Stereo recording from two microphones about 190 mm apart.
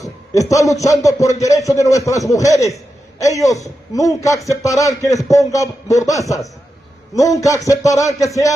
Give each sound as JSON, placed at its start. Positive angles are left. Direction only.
{"t": 0.0, "sound": "a man's voice", "side_deg": 15}